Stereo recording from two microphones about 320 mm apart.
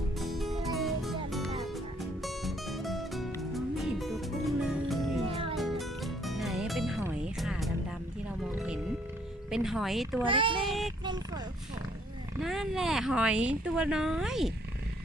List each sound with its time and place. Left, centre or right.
0.2 s music: centre
5.3 s music: centre
5.5 s music: centre
9.5 s speech: centre
10.2 s speech: centre
10.7 s a sound: centre
12.4 s speech: centre